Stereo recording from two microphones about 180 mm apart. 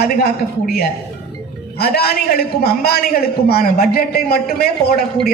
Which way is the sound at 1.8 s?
60° left (ahead or behind).